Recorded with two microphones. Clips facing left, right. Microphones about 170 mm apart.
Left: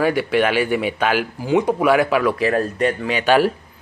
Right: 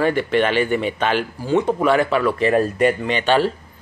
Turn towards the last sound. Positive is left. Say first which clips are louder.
# left 1 dB
turn(degrees=10)  # may be behind; listen again after turning